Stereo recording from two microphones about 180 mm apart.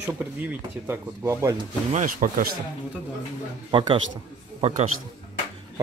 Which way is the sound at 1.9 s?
45° right (ahead or behind).